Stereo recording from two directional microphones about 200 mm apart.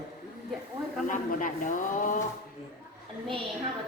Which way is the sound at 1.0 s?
40° left (ahead or behind).